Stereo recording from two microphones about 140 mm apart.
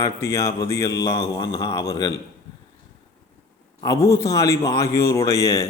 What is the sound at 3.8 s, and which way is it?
A man's voice, 20° left (ahead or behind).